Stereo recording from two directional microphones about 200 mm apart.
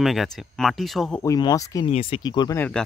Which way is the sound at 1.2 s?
20° left (ahead or behind).